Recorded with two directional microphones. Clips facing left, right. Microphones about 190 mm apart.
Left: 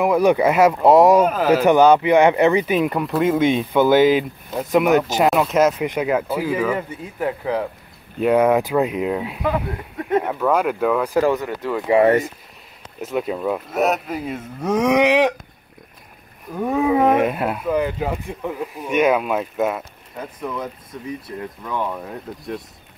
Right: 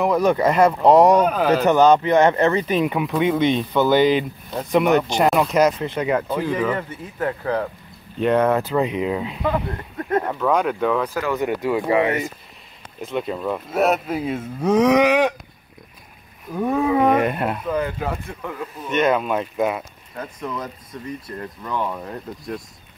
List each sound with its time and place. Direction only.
0.0 s speech: 10° left (ahead or behind)
11.4 s speech: 15° right (ahead or behind)
13.0 s speech: 5° left (ahead or behind)
15.0 s a sound: 20° left (ahead or behind)
16.6 s speech: 5° left (ahead or behind)
17.7 s speech: 15° left (ahead or behind)